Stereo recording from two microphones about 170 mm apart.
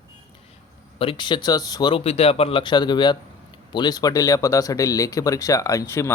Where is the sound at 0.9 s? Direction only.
30° left (ahead or behind).